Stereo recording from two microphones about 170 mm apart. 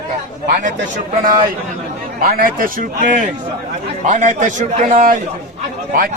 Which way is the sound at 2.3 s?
55° right (ahead or behind).